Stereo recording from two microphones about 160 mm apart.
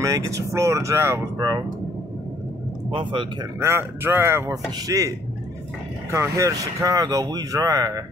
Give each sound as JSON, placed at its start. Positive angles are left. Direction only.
{"t": 0.0, "sound": "speech", "side_deg": -20}
{"t": 2.9, "sound": "speech", "side_deg": -30}
{"t": 3.5, "sound": "a man's voice", "side_deg": -15}
{"t": 6.1, "sound": "speech", "side_deg": -20}